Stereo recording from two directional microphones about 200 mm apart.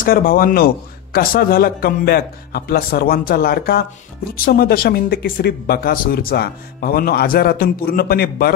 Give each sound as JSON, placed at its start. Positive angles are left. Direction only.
{"t": 0.0, "sound": "speech", "side_deg": 45}